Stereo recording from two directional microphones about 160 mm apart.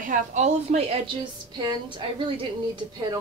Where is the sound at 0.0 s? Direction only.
50° right (ahead or behind); by 3.2 s 30° right (ahead or behind).